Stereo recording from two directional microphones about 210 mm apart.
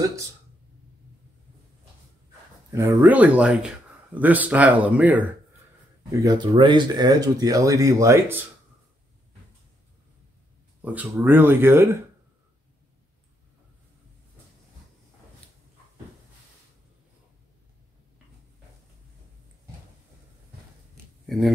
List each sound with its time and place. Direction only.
2.7 s speech: 15° right (ahead or behind)
6.1 s speech: 20° right (ahead or behind)
10.8 s speech: 5° right (ahead or behind)
21.3 s speech: centre (ahead or behind)